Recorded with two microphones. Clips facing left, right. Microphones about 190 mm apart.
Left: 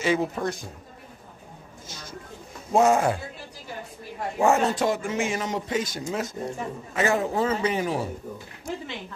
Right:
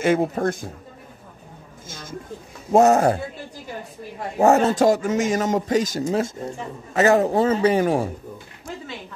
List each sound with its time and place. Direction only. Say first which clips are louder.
0.0 s a man's voice: right 5 dB; 50° right (ahead or behind)
1.9 s a sound: right 5 dB; 50° right (ahead or behind)
2.7 s a man's voice: right 5 dB; 40° right (ahead or behind)
4.4 s a man's voice: right 5 dB; 40° right (ahead or behind)
7.8 s a man's voice: right 7 dB; 50° right (ahead or behind)